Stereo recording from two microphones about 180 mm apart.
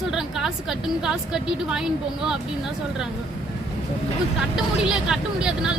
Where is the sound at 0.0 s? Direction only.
5° right (ahead or behind).